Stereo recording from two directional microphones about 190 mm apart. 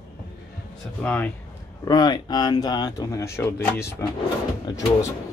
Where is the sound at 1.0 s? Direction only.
10° left (ahead or behind).